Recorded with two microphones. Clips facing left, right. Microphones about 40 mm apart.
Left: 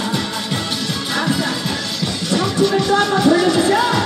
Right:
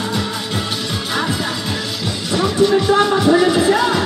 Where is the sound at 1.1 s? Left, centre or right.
Centre.